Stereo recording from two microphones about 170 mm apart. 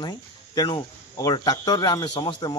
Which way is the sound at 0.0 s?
25° left (ahead or behind).